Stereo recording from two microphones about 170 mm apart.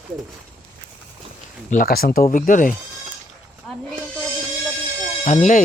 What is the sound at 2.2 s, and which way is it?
Speech, 50° left (ahead or behind).